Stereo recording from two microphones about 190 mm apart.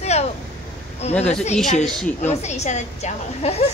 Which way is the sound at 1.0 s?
35° left (ahead or behind).